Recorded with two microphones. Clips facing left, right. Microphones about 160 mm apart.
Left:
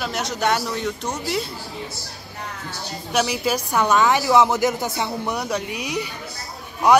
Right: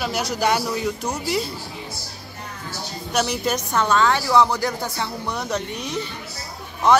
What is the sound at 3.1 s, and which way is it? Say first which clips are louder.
Speech: left 1 dB; 5° left (ahead or behind).